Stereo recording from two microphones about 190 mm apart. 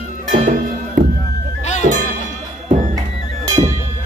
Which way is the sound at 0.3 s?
40° right (ahead or behind).